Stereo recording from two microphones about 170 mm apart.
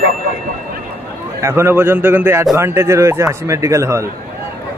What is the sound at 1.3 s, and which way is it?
Speech, 15° right (ahead or behind).